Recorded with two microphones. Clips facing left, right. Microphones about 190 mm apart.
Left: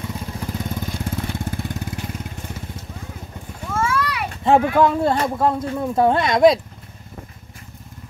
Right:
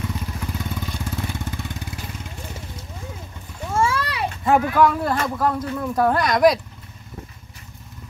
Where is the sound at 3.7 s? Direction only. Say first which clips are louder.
Even; 30° right (ahead or behind).